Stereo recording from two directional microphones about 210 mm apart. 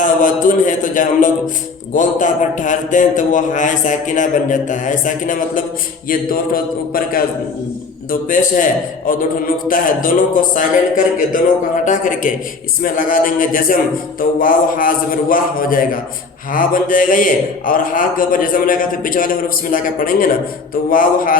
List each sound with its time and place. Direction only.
0.0 s a man's voice: 40° left (ahead or behind)
8.3 s a man's voice: 40° left (ahead or behind)